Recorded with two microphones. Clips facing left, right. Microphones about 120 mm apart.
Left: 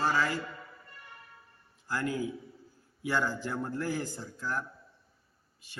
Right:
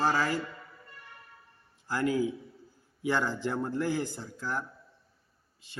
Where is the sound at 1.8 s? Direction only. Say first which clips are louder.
Right 4 dB; 15° right (ahead or behind).